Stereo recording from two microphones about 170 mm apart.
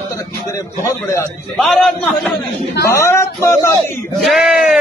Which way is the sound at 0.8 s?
20° left (ahead or behind).